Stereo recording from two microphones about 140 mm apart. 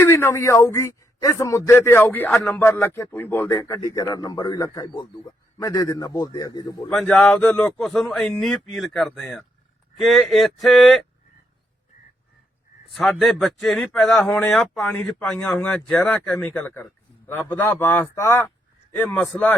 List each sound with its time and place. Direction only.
0.0 s speech: 15° left (ahead or behind)
2.6 s speech: 15° left (ahead or behind)
6.9 s speech: 5° left (ahead or behind)
12.9 s speech: centre (ahead or behind); by 18.5 s 20° left (ahead or behind)
19.0 s speech: 5° left (ahead or behind)